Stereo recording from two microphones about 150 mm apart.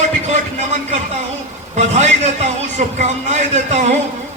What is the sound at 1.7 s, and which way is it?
A man's voice, 50° right (ahead or behind).